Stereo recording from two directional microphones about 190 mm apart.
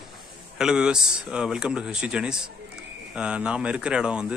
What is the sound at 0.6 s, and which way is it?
Speech, 5° right (ahead or behind).